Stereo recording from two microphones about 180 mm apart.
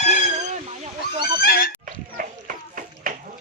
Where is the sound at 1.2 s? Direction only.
55° left (ahead or behind).